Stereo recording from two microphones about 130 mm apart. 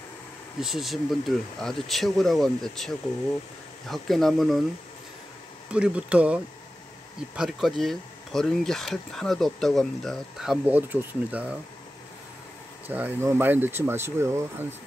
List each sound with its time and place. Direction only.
0.6 s speech: 5° right (ahead or behind)
3.9 s speech: centre (ahead or behind)
5.7 s speech: 10° right (ahead or behind)
10.6 s speech: 15° right (ahead or behind)
12.8 s speech: 15° right (ahead or behind)